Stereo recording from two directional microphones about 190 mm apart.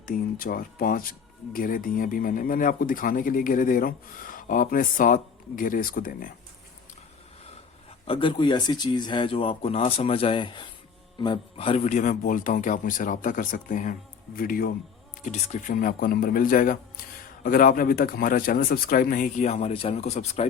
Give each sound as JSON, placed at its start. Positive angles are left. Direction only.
{"t": 0.0, "sound": "speech", "side_deg": 50}
{"t": 8.0, "sound": "speech", "side_deg": 25}